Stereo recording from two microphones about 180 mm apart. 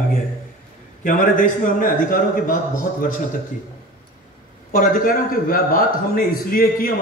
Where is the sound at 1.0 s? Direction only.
50° left (ahead or behind).